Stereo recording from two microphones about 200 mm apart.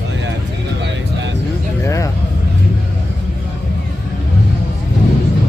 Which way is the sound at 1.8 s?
15° left (ahead or behind).